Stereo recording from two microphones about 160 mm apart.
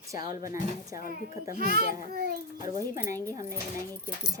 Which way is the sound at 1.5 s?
80° right.